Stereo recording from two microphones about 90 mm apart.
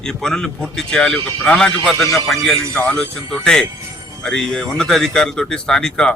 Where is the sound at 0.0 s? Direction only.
5° left (ahead or behind).